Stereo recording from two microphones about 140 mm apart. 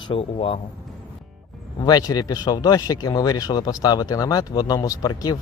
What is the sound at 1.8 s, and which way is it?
Speech, 25° left (ahead or behind).